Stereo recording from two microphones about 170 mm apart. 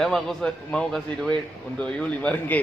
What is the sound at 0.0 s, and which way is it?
A man's voice, centre (ahead or behind).